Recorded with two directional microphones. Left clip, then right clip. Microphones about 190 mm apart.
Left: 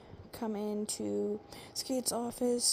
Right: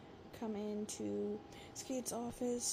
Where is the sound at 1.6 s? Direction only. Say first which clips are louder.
Left 7 dB; 45° left (ahead or behind).